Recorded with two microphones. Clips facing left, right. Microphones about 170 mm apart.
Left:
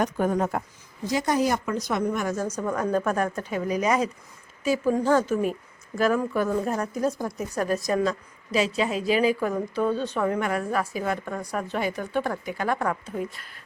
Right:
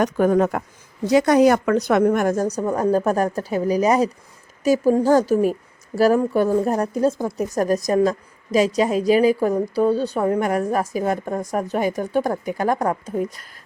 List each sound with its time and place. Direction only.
0.0 s speech: 90° right
1.0 s a woman's voice: 70° right (ahead or behind); by 7.4 s 25° right (ahead or behind)
7.4 s a woman's voice: 40° right (ahead or behind)